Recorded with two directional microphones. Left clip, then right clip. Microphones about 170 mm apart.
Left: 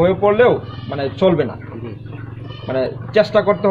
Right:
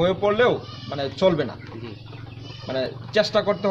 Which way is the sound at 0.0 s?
15° right (ahead or behind).